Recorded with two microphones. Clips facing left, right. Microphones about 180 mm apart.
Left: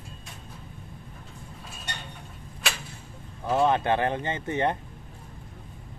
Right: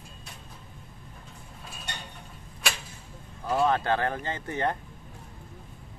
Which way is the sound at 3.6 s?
20° left (ahead or behind).